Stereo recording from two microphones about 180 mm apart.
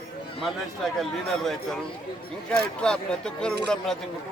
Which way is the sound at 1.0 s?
Centre (ahead or behind).